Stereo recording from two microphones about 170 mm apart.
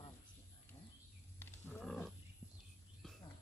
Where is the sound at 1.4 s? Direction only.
5° left (ahead or behind).